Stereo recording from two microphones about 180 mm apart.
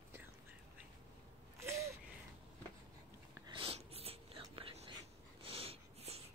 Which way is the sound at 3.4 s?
30° right (ahead or behind).